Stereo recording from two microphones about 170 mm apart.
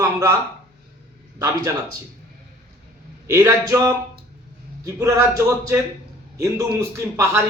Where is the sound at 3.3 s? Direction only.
15° right (ahead or behind).